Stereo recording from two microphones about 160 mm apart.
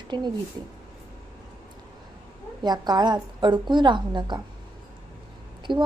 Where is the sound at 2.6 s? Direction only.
25° right (ahead or behind).